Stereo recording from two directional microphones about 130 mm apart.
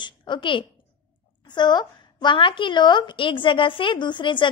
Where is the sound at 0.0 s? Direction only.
35° left (ahead or behind).